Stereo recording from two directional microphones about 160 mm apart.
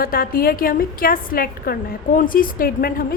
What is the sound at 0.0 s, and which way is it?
A woman's voice, 65° left (ahead or behind).